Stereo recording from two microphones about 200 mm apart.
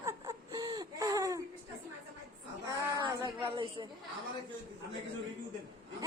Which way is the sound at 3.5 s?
25° right (ahead or behind).